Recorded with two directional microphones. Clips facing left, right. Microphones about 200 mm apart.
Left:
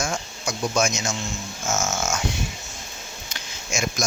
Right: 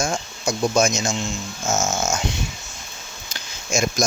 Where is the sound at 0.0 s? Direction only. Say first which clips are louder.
Right 4 dB; 30° right (ahead or behind).